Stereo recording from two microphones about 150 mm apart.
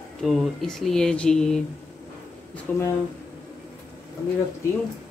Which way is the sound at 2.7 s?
10° left (ahead or behind).